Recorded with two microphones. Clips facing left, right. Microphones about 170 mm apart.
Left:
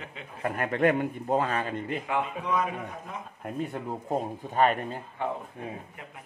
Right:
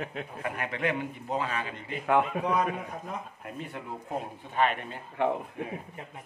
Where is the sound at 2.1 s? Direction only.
60° right (ahead or behind).